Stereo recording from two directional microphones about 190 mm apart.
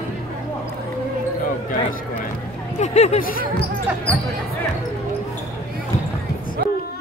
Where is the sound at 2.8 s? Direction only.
35° left (ahead or behind).